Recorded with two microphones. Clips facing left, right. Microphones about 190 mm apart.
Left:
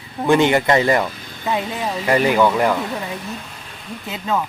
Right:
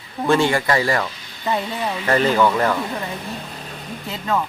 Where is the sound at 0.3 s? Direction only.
20° left (ahead or behind).